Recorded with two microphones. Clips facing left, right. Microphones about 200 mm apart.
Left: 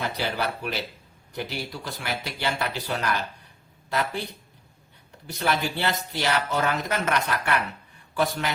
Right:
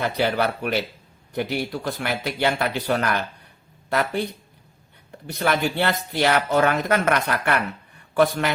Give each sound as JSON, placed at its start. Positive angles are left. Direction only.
{"t": 0.0, "sound": "speech", "side_deg": -60}
{"t": 5.2, "sound": "speech", "side_deg": -55}